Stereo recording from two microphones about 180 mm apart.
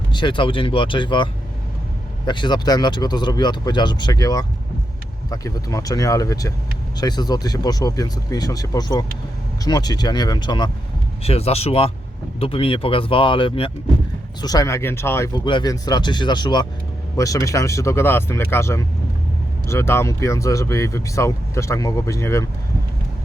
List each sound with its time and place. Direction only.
0.1 s speech: 25° left (ahead or behind)